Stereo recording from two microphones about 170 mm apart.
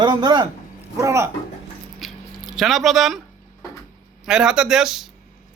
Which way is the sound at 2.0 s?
Centre (ahead or behind).